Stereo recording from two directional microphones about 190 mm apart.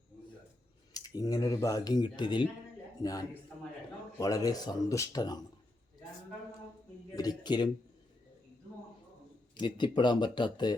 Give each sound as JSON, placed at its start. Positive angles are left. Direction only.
{"t": 0.9, "sound": "speech", "side_deg": 20}
{"t": 7.2, "sound": "speech", "side_deg": 20}
{"t": 9.6, "sound": "speech", "side_deg": 25}